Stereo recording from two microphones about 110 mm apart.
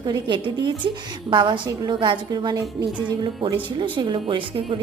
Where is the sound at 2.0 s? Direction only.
45° right (ahead or behind).